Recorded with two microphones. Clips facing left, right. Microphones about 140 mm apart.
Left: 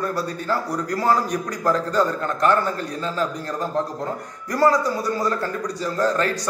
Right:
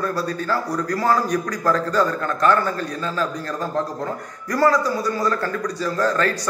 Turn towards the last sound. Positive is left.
turn(degrees=20)  # may be behind; listen again after turning